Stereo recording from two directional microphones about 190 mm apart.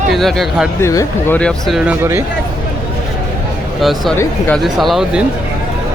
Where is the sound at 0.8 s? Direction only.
15° left (ahead or behind).